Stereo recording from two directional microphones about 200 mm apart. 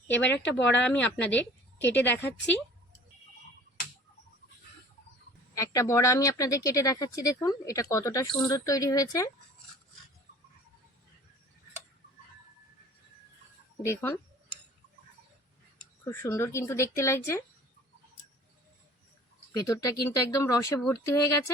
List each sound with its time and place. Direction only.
0.1 s speech: 10° left (ahead or behind)
0.6 s a woman's voice: 65° left (ahead or behind)
1.3 s a woman's voice: 10° left (ahead or behind)
5.5 s speech: 15° left (ahead or behind)
13.8 s speech: 15° left (ahead or behind)
16.0 s speech: 15° left (ahead or behind)
19.5 s speech: 15° left (ahead or behind)